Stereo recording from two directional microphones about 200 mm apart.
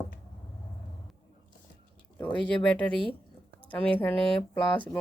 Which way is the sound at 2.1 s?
5° left (ahead or behind).